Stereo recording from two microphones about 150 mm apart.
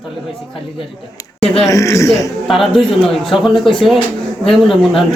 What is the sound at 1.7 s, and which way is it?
Speech, 20° left (ahead or behind).